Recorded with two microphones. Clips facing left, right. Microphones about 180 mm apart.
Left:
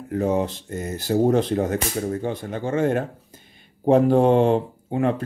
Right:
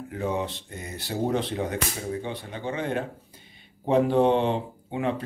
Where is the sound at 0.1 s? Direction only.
40° left (ahead or behind).